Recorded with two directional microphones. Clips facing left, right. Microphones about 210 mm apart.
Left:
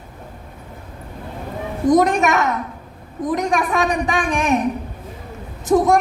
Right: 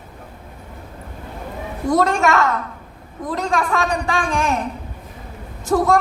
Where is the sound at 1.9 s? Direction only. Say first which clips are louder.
Left 2 dB; 15° left (ahead or behind).